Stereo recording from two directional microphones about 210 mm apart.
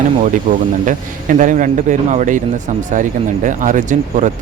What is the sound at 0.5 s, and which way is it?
Speech, 40° right (ahead or behind).